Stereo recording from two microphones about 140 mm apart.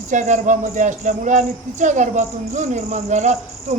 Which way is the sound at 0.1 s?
60° right (ahead or behind).